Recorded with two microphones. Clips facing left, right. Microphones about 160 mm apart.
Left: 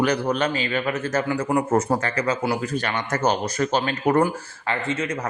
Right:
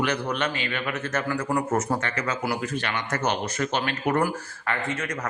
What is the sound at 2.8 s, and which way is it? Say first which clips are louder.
Speech: left 3 dB; 40° left (ahead or behind).